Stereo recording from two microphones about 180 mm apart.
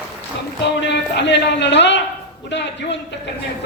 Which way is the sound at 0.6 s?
75° left (ahead or behind).